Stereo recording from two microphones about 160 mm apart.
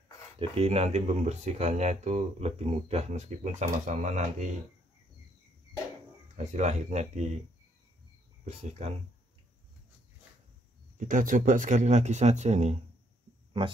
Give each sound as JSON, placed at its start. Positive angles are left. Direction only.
{"t": 0.4, "sound": "speech", "side_deg": -40}
{"t": 6.3, "sound": "speech", "side_deg": -50}
{"t": 8.5, "sound": "speech", "side_deg": -45}
{"t": 11.0, "sound": "speech", "side_deg": -55}